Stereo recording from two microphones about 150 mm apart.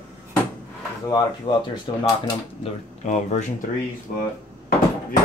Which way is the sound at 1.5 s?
35° left (ahead or behind).